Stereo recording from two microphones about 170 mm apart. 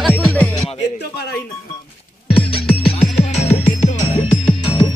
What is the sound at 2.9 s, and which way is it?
Music, 40° left (ahead or behind).